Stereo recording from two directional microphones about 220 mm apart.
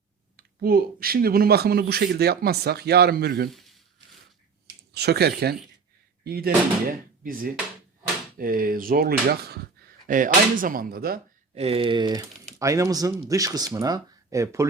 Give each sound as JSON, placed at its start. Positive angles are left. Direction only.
{"t": 0.3, "sound": "speech", "side_deg": -45}
{"t": 3.5, "sound": "a sound", "side_deg": 0}
{"t": 4.9, "sound": "speech", "side_deg": -45}
{"t": 11.5, "sound": "speech", "side_deg": -25}